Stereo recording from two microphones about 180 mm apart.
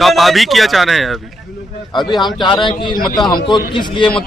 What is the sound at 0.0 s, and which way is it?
A man's voice, centre (ahead or behind).